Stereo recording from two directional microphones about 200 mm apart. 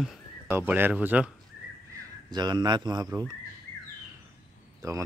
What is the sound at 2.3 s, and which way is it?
Speech, 20° right (ahead or behind).